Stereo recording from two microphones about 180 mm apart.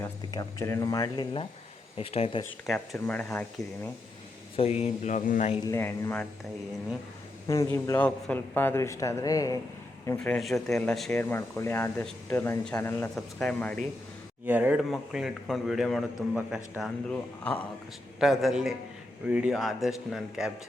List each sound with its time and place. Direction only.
0.0 s speech: 15° left (ahead or behind); by 2.4 s 30° left (ahead or behind)
2.6 s a man's voice: centre (ahead or behind)
4.5 s speech: 35° left (ahead or behind)
5.6 s a man's voice: 15° left (ahead or behind)
7.4 s a man's voice: 15° left (ahead or behind)
10.2 s a man's voice: 5° left (ahead or behind)
11.2 s a man's voice: 15° left (ahead or behind)
14.4 s a man's voice: 10° right (ahead or behind)